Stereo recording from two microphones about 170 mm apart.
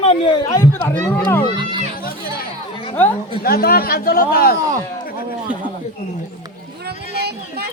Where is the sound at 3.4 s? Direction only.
65° left (ahead or behind).